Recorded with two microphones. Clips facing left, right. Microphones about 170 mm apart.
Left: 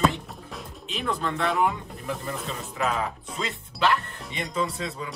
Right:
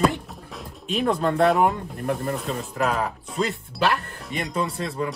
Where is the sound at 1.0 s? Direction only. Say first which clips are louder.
Right 7 dB; 40° right (ahead or behind).